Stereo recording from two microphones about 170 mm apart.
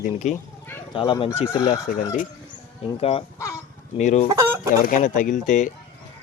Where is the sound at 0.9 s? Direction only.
30° left (ahead or behind).